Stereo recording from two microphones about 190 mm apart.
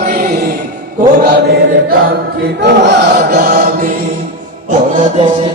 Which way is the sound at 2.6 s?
60° right (ahead or behind).